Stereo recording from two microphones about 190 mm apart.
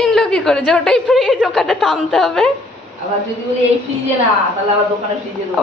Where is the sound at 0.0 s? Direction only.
5° left (ahead or behind).